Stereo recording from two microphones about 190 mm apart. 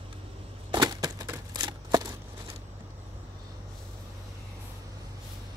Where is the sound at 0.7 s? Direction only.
20° right (ahead or behind).